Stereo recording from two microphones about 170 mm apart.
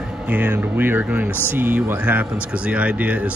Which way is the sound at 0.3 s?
10° right (ahead or behind).